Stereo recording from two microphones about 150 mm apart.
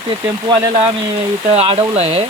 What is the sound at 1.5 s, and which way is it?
Speech, 40° right (ahead or behind).